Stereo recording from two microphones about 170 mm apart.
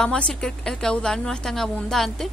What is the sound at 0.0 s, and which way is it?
A woman's voice, 5° left (ahead or behind).